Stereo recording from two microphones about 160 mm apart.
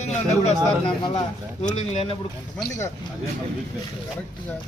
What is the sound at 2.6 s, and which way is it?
Speech, 20° left (ahead or behind).